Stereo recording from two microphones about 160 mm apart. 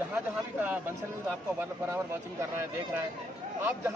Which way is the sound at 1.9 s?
15° right (ahead or behind).